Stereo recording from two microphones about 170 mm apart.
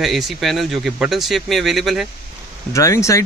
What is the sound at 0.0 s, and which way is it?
A man's voice, centre (ahead or behind).